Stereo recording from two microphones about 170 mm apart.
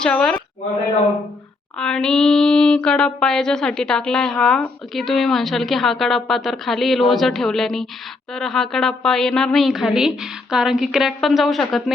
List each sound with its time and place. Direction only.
0.0 s speech: 5° left (ahead or behind)
1.8 s speech: 5° left (ahead or behind)